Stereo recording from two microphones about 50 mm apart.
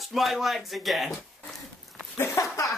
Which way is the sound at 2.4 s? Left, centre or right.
Left.